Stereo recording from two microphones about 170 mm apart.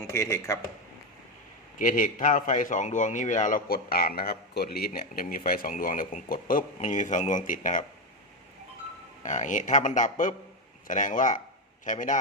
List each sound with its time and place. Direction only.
0.1 s speech: 15° left (ahead or behind)
1.8 s a man's voice: 50° left (ahead or behind)
9.2 s a man's voice: 45° left (ahead or behind)